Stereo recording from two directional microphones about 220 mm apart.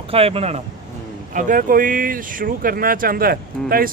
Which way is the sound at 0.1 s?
25° right (ahead or behind).